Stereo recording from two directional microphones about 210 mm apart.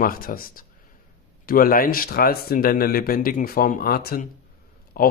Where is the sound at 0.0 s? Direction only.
45° left (ahead or behind).